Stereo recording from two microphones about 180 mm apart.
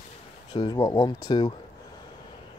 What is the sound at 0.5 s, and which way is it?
Speech, 25° left (ahead or behind).